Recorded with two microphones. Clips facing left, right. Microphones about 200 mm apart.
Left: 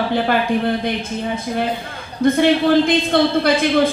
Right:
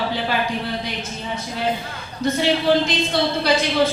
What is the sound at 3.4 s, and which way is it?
Speech, 55° left (ahead or behind).